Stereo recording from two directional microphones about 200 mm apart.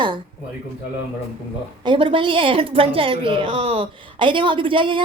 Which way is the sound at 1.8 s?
25° right (ahead or behind).